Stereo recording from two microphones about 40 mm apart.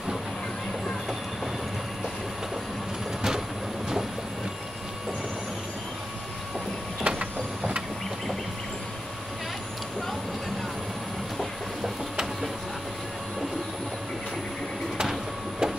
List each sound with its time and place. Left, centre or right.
3.2 s train: centre
7.1 s vehicle: right
15.6 s printer: centre